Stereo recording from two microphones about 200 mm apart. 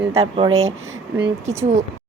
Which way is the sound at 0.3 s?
25° right (ahead or behind).